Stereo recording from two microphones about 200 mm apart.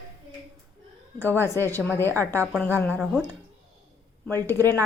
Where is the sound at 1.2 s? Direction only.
10° left (ahead or behind).